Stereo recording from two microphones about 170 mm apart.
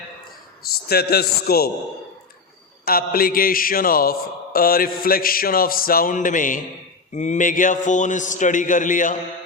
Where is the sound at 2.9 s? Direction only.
60° left (ahead or behind).